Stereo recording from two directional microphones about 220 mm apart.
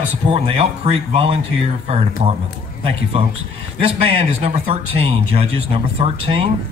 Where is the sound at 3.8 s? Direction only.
25° right (ahead or behind).